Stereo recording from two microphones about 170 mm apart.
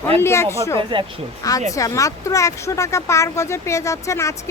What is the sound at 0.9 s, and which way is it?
Speech, 30° right (ahead or behind).